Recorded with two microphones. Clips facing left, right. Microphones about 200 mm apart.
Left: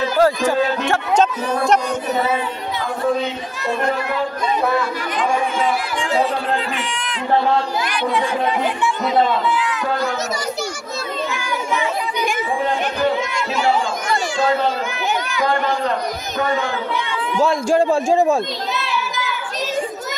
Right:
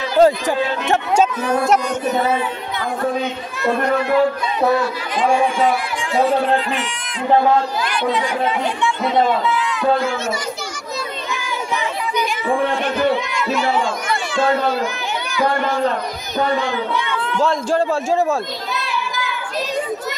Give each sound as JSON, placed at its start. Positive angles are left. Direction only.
{"t": 0.2, "sound": "speech", "side_deg": -20}
{"t": 17.1, "sound": "speech", "side_deg": 10}